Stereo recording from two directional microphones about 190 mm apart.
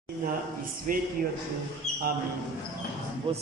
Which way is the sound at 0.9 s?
45° right (ahead or behind).